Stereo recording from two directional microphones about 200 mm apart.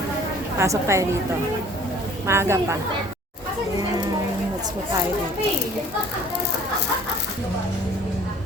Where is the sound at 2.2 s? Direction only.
15° right (ahead or behind).